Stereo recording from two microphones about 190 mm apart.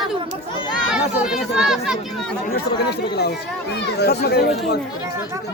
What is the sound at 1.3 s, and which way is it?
Speech, 5° right (ahead or behind).